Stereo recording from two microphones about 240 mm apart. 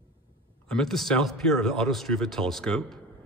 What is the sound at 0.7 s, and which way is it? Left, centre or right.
Speech, centre.